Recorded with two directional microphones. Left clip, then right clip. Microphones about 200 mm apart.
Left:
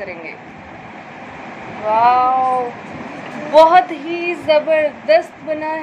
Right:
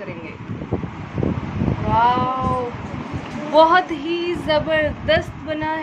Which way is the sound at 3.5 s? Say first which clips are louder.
Left 4 dB; 55° right (ahead or behind).